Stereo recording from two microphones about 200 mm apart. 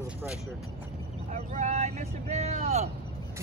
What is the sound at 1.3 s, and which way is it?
Speech, 35° right (ahead or behind).